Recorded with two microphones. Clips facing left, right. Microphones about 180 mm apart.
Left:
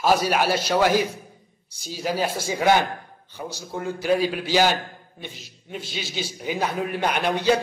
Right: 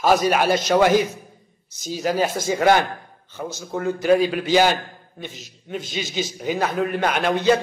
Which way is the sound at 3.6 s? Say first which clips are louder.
Right 5 dB; 5° left (ahead or behind).